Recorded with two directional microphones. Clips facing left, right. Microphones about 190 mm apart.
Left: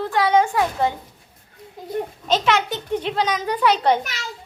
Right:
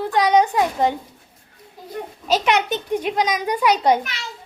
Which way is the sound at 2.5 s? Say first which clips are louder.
Right 1 dB; 20° right (ahead or behind).